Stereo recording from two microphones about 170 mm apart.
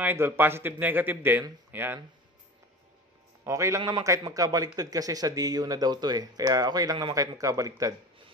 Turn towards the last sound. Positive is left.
turn(degrees=-20)  # may be behind; listen again after turning